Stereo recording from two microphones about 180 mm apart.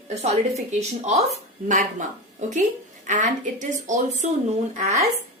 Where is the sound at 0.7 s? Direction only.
40° right (ahead or behind).